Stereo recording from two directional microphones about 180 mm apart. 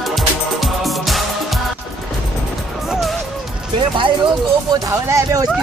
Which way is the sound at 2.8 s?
Centre (ahead or behind).